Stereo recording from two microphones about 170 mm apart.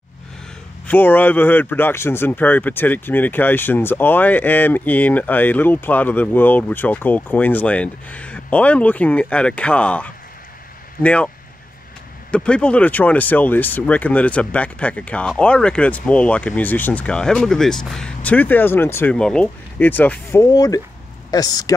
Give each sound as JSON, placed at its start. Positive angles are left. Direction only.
{"t": 0.8, "sound": "speech", "side_deg": 10}
{"t": 12.3, "sound": "speech", "side_deg": 5}